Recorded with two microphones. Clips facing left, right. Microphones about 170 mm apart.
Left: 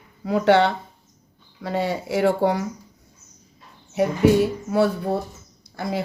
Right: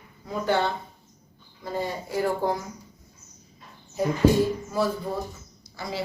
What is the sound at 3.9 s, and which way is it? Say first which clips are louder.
Speech: left 3 dB; 70° left (ahead or behind).